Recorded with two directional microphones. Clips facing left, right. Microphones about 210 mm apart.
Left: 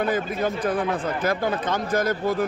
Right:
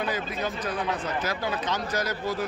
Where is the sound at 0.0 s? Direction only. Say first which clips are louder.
Left 6 dB; 50° left (ahead or behind).